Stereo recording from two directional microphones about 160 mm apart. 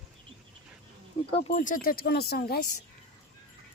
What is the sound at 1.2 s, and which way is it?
Speech, 40° left (ahead or behind).